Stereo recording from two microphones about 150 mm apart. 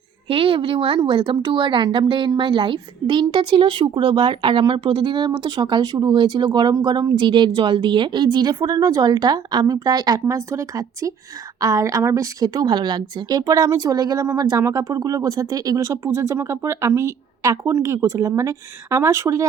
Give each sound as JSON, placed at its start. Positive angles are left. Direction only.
{"t": 0.3, "sound": "a woman's voice", "side_deg": -35}